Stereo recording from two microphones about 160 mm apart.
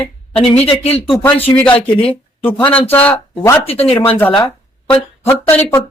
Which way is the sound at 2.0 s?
15° left (ahead or behind).